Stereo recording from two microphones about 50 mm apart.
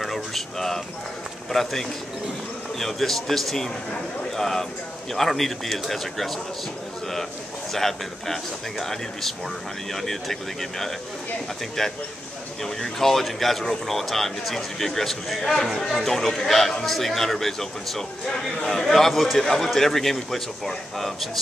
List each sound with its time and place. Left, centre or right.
0.0 s a sound: centre
1.5 s speech: centre
7.7 s speech: centre